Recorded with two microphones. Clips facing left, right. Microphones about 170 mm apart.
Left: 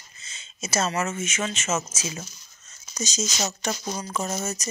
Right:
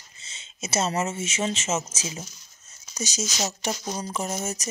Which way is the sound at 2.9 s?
15° right (ahead or behind).